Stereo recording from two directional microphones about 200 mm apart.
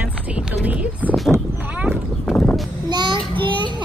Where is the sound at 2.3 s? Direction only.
10° left (ahead or behind).